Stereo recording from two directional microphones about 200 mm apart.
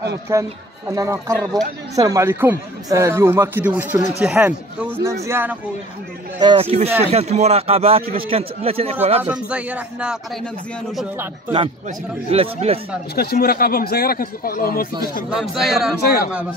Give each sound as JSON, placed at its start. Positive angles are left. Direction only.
{"t": 0.3, "sound": "speech", "side_deg": -15}
{"t": 6.4, "sound": "a man's voice", "side_deg": -25}
{"t": 9.2, "sound": "speech", "side_deg": -5}
{"t": 12.3, "sound": "a man's voice", "side_deg": -30}
{"t": 13.1, "sound": "a man's voice", "side_deg": 50}
{"t": 15.2, "sound": "speech", "side_deg": 0}
{"t": 16.0, "sound": "a man's voice", "side_deg": 50}